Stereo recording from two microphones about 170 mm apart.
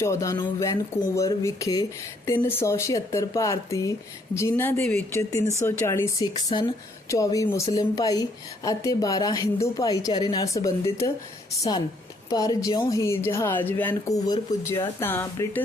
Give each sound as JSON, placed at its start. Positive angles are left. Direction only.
{"t": 0.0, "sound": "speech", "side_deg": 20}
{"t": 6.3, "sound": "speech", "side_deg": 30}
{"t": 12.3, "sound": "speech", "side_deg": 20}